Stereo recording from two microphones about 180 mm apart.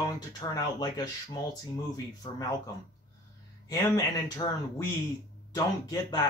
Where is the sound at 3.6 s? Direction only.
20° left (ahead or behind).